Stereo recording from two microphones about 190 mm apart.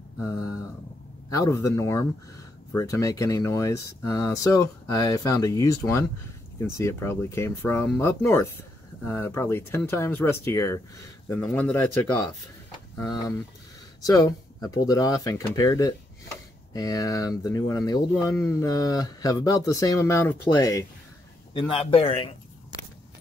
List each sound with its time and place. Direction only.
1.3 s speech: 15° left (ahead or behind)
14.0 s speech: 20° left (ahead or behind)
21.5 s speech: 30° left (ahead or behind)